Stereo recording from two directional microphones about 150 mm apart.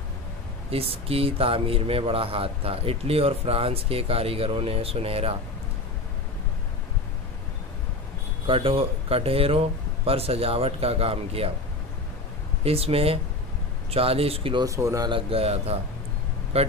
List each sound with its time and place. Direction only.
0.7 s speech: 40° right (ahead or behind)
8.5 s speech: 40° right (ahead or behind)
12.6 s speech: 40° right (ahead or behind)
14.7 s speech: 20° right (ahead or behind)
15.0 s a man's voice: 40° right (ahead or behind)